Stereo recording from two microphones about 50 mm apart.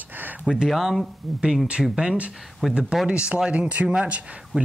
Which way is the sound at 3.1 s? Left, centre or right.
Right.